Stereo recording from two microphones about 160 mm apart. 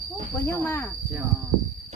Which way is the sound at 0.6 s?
15° left (ahead or behind).